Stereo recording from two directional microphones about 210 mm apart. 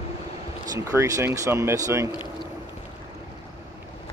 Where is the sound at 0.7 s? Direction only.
15° right (ahead or behind).